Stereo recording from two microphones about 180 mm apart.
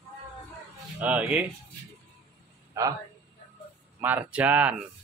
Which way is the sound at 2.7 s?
20° right (ahead or behind).